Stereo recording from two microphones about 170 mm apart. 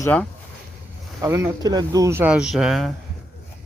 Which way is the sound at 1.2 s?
15° right (ahead or behind).